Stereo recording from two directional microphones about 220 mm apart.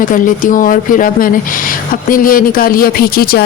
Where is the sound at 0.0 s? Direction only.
35° left (ahead or behind).